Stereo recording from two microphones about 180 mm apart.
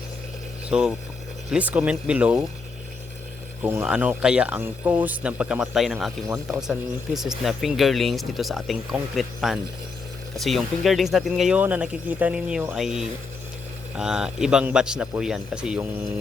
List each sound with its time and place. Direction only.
0.7 s speech: 5° right (ahead or behind)
3.6 s speech: 10° right (ahead or behind)
6.2 s speech: 15° right (ahead or behind)
6.6 s speech: centre (ahead or behind)